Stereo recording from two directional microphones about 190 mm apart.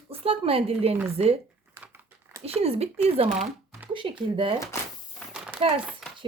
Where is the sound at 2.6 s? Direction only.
35° right (ahead or behind).